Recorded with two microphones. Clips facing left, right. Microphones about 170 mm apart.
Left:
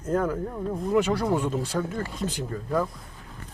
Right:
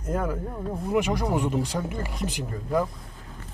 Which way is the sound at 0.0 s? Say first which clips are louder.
Left 3 dB; 10° right (ahead or behind).